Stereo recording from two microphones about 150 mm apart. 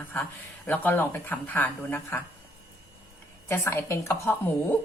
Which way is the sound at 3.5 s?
20° left (ahead or behind).